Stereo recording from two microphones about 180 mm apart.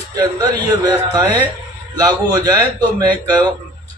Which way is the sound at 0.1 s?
20° right (ahead or behind).